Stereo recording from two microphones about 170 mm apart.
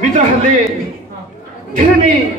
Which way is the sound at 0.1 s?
50° right (ahead or behind).